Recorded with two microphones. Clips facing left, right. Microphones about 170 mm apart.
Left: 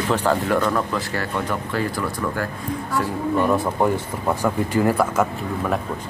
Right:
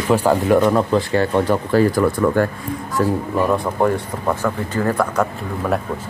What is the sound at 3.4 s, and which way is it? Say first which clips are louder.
Speech: right 3 dB; centre (ahead or behind).